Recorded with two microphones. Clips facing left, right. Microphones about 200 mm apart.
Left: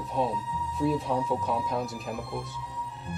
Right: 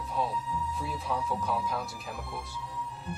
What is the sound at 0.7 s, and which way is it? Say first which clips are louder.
Speech: left 12 dB; centre (ahead or behind).